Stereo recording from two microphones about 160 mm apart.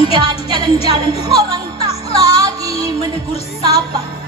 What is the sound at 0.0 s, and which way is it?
Music, 30° right (ahead or behind).